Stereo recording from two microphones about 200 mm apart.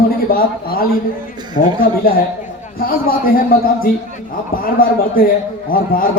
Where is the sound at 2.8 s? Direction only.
45° left (ahead or behind).